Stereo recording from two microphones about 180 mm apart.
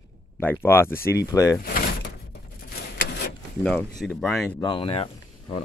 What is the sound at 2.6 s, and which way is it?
Rub, 60° left (ahead or behind).